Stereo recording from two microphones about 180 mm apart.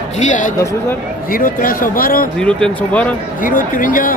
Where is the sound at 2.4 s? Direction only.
5° left (ahead or behind).